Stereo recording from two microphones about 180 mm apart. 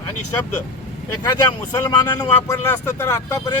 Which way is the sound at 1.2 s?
20° left (ahead or behind).